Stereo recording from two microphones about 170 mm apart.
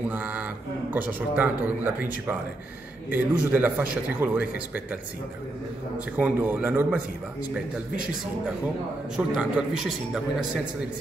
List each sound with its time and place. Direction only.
0.1 s a man's voice: 10° right (ahead or behind)
6.1 s a man's voice: 10° right (ahead or behind)
9.1 s a man's voice: 5° right (ahead or behind)